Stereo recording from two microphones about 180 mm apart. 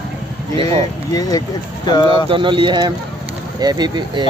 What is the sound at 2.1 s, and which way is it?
Speech, 30° right (ahead or behind).